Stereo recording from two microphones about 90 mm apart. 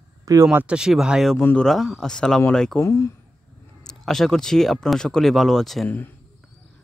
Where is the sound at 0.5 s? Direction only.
15° right (ahead or behind); by 2.7 s 5° left (ahead or behind).